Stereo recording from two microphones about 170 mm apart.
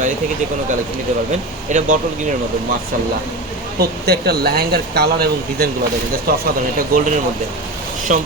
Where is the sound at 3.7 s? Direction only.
70° right (ahead or behind).